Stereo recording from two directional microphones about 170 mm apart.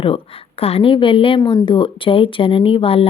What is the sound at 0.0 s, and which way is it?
Speech, 35° left (ahead or behind).